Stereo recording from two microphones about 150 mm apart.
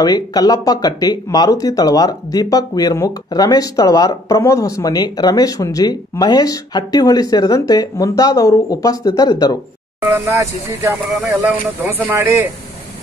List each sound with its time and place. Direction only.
0.0 s speech: 25° left (ahead or behind)
10.0 s speech: 15° right (ahead or behind)